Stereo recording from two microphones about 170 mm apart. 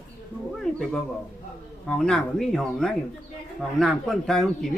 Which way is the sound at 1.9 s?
5° left (ahead or behind).